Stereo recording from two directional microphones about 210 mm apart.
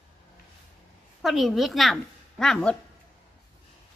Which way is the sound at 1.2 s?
Centre (ahead or behind).